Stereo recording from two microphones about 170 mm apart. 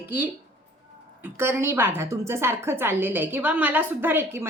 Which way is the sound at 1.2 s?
15° right (ahead or behind).